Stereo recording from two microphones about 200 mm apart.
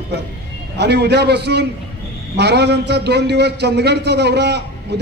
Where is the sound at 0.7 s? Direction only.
55° right (ahead or behind).